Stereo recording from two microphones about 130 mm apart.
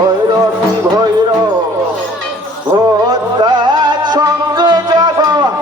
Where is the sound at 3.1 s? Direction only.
30° right (ahead or behind).